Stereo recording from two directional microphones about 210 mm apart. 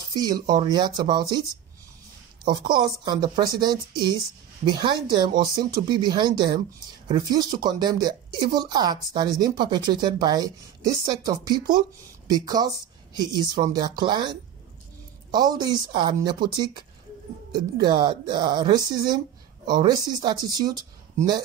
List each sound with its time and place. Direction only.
0.1 s speech: 20° right (ahead or behind)
2.4 s speech: 20° right (ahead or behind)
15.3 s speech: 20° right (ahead or behind)